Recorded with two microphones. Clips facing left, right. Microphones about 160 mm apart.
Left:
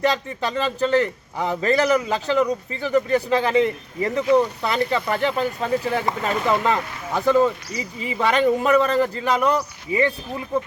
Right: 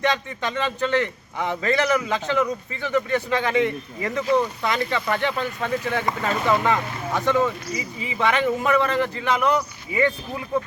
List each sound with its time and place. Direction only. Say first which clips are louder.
0.0 s a man's voice: left 2 dB; 35° left (ahead or behind)